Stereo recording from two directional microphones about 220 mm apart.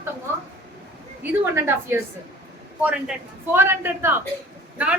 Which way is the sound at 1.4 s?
10° right (ahead or behind).